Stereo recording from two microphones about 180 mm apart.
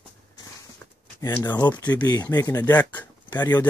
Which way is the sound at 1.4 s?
25° left (ahead or behind).